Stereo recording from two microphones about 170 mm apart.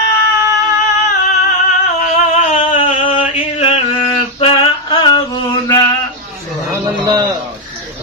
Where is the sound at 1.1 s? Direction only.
50° left (ahead or behind).